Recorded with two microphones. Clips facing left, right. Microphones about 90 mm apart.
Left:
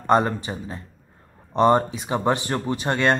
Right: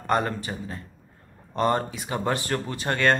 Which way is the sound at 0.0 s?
20° left (ahead or behind).